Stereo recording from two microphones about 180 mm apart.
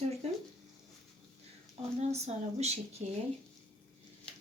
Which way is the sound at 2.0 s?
35° right (ahead or behind).